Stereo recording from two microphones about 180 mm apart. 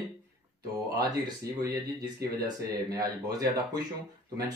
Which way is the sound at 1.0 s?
20° right (ahead or behind).